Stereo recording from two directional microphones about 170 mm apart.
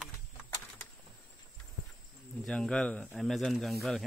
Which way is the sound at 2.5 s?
5° left (ahead or behind).